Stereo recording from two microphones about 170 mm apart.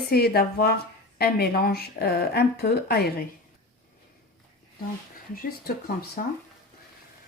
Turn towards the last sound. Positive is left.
turn(degrees=55)  # may be behind; listen again after turning